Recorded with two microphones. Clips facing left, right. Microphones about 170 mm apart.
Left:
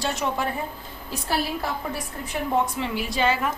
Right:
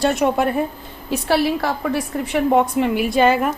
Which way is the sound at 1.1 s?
75° right (ahead or behind).